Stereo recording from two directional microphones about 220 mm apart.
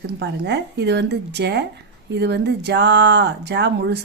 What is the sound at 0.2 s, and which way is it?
Speech, 50° right (ahead or behind).